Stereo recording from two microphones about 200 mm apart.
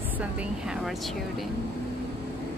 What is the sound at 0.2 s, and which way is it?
Speech, 5° right (ahead or behind).